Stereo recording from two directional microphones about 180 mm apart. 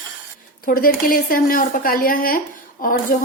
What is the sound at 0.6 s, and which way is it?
Speech, 50° left (ahead or behind).